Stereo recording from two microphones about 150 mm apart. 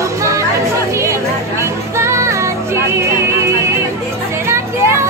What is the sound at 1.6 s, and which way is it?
Music, 20° right (ahead or behind).